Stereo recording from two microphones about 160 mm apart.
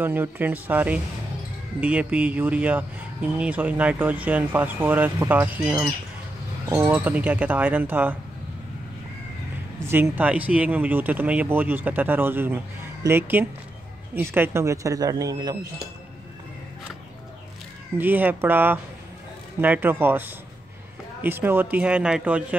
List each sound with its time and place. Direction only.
0.0 s speech: 10° right (ahead or behind)
9.8 s speech: 15° right (ahead or behind)
17.9 s speech: 10° right (ahead or behind)